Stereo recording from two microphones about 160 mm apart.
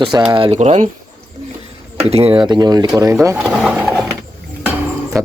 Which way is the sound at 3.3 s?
5° right (ahead or behind).